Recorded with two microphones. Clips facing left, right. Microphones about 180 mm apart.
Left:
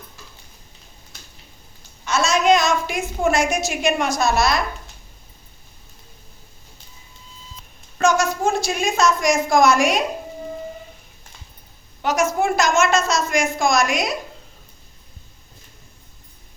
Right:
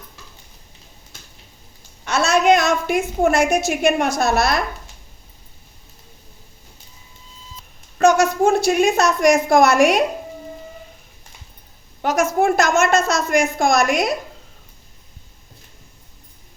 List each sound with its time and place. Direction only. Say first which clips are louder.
2.0 s a sound: right 2 dB; 60° right (ahead or behind)
3.2 s a woman's voice: right 2 dB; 55° right (ahead or behind)
8.0 s a woman's voice: right 4 dB; 60° right (ahead or behind)
12.0 s a woman's voice: right 2 dB; 55° right (ahead or behind)